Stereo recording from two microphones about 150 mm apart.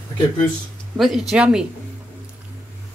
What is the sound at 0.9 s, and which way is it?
Speech, centre (ahead or behind).